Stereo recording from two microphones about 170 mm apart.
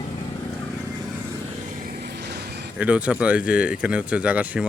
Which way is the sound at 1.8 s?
65° right (ahead or behind).